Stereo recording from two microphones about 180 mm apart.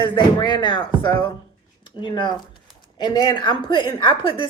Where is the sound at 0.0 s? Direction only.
25° left (ahead or behind).